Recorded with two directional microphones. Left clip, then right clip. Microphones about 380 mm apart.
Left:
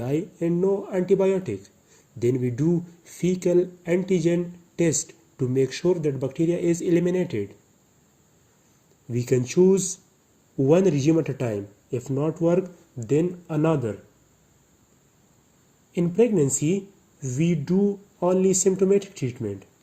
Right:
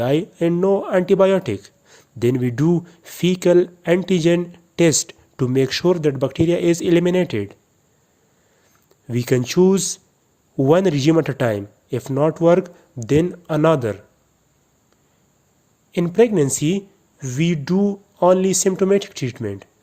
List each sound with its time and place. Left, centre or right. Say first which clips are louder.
0.0 s speech: right 8 dB; right
9.0 s speech: right 4 dB; right
15.9 s speech: right 5 dB; right